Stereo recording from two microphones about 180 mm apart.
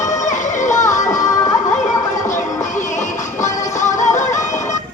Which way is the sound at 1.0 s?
20° left (ahead or behind).